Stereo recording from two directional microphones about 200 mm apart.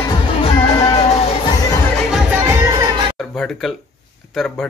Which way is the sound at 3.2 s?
Centre (ahead or behind).